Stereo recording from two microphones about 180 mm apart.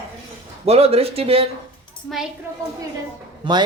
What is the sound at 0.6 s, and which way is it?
Speech, 35° right (ahead or behind).